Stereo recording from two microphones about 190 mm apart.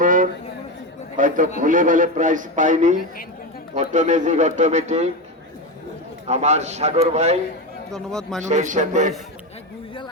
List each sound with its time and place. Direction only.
0.0 s a sound: 45° right (ahead or behind)
1.1 s a man's voice: 45° right (ahead or behind)
6.2 s a man's voice: 35° right (ahead or behind)
7.9 s speech: centre (ahead or behind)
8.4 s a man's voice: 40° right (ahead or behind)